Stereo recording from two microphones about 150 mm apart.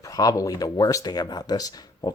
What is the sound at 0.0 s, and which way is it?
Speech, 25° left (ahead or behind).